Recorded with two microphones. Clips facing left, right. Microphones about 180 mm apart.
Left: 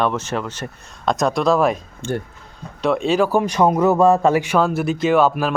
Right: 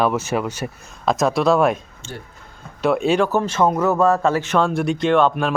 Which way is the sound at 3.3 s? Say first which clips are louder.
Left 2 dB; 15° left (ahead or behind).